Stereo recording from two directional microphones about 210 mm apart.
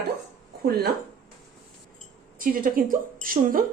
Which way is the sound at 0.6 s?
50° right (ahead or behind).